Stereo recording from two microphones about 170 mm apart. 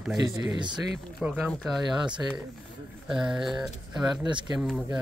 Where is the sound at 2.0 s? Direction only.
25° right (ahead or behind).